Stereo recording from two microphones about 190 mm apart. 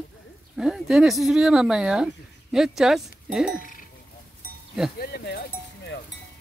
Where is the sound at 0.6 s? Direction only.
5° right (ahead or behind).